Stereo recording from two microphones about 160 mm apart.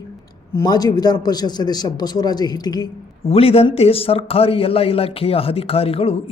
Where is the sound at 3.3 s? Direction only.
40° left (ahead or behind).